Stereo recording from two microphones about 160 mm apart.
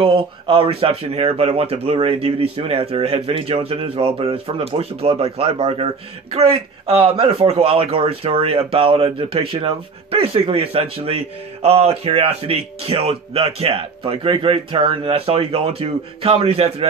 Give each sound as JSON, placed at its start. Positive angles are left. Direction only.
{"t": 0.0, "sound": "speech", "side_deg": -35}